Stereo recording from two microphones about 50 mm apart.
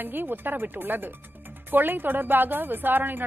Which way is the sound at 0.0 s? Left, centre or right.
Right.